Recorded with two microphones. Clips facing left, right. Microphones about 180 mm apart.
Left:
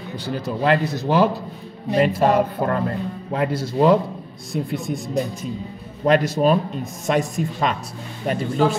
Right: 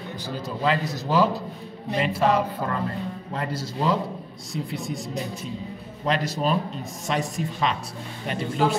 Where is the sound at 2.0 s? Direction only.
45° left (ahead or behind).